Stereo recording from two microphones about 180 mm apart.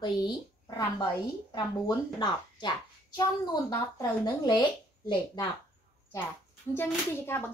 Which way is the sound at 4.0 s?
25° left (ahead or behind).